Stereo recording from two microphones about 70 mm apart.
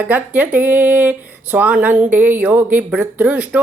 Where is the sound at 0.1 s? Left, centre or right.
Right.